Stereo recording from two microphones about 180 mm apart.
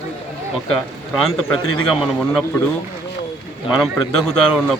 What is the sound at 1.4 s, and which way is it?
Speech, 5° left (ahead or behind).